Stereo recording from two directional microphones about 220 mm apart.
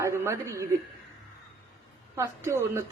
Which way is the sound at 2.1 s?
10° right (ahead or behind).